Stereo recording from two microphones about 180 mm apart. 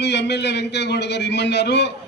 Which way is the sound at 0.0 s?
70° left (ahead or behind).